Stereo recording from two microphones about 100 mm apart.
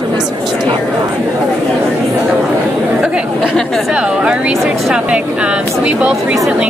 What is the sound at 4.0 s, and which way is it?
Speech, 10° right (ahead or behind).